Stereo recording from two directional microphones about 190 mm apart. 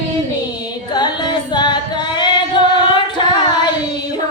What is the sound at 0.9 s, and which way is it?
Singing, 25° left (ahead or behind).